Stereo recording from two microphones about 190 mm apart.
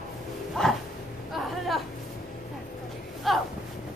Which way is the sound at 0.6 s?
5° left (ahead or behind).